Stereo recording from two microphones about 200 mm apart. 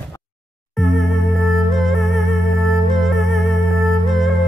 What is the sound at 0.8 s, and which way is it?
Music, centre (ahead or behind).